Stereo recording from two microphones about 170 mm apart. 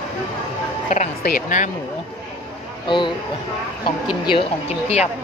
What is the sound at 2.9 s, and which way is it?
Speech, 25° left (ahead or behind).